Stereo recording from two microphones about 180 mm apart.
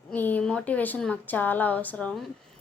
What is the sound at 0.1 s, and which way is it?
A woman's voice, 10° left (ahead or behind).